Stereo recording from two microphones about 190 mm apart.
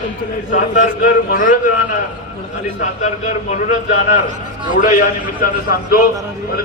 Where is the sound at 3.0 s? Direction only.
40° left (ahead or behind).